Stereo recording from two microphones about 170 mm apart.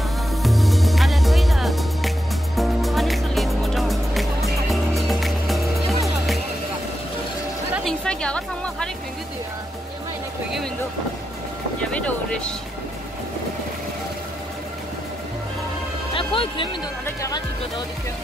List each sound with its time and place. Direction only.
0.4 s music: centre (ahead or behind)
7.7 s chatter: 5° left (ahead or behind)
11.9 s vehicle: 10° left (ahead or behind)
16.2 s music: 30° left (ahead or behind)